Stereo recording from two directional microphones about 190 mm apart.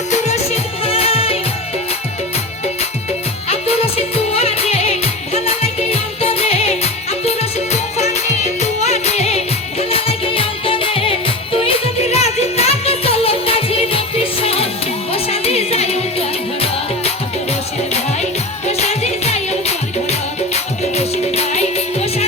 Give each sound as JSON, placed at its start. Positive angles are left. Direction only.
{"t": 0.1, "sound": "music", "side_deg": 35}
{"t": 3.5, "sound": "music", "side_deg": 30}
{"t": 18.8, "sound": "music", "side_deg": 35}